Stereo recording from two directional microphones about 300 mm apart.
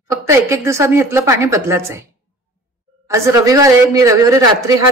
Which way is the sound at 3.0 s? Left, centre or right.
Centre.